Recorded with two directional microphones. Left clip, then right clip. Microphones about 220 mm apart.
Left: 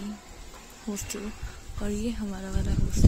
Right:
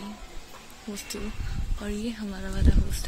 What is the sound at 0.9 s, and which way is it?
Speech, 25° left (ahead or behind).